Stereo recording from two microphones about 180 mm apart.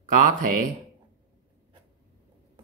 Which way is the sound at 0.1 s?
50° right (ahead or behind).